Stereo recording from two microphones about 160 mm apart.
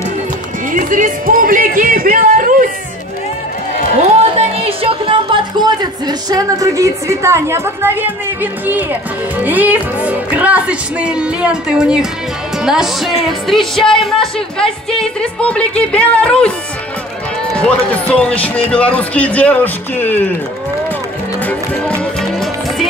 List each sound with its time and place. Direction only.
0.7 s speech: 55° right (ahead or behind)
4.0 s speech: 40° right (ahead or behind); by 16.5 s 5° left (ahead or behind)
17.6 s speech: 10° left (ahead or behind)
22.2 s music: centre (ahead or behind)